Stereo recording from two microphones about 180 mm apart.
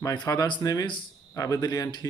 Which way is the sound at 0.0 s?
20° left (ahead or behind).